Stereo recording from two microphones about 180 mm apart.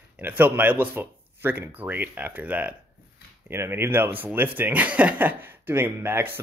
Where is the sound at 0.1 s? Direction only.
10° right (ahead or behind).